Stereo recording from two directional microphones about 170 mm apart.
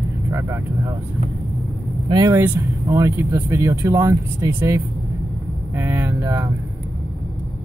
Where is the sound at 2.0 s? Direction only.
20° right (ahead or behind).